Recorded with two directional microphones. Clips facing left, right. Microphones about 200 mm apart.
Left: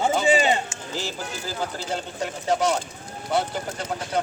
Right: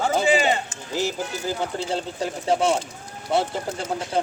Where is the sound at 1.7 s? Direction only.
30° right (ahead or behind).